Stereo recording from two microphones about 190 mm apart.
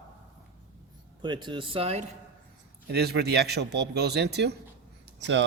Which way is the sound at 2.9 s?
60° right (ahead or behind).